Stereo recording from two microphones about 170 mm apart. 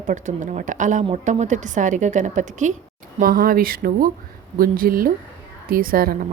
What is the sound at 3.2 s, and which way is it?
Speech, 60° right (ahead or behind).